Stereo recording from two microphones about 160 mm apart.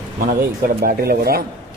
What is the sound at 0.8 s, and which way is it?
Speech, 75° right (ahead or behind).